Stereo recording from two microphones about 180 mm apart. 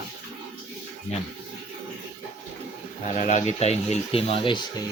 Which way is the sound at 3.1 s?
45° left (ahead or behind).